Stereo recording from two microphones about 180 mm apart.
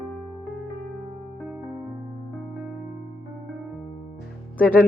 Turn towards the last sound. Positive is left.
turn(degrees=10)  # may be behind; listen again after turning